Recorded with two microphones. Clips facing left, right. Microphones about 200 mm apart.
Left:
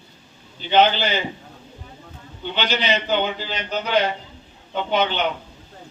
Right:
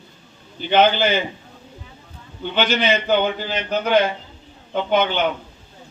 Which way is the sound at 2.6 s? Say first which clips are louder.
Right 4 dB; 50° right (ahead or behind).